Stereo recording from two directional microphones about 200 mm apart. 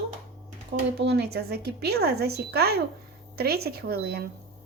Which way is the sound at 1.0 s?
55° right (ahead or behind).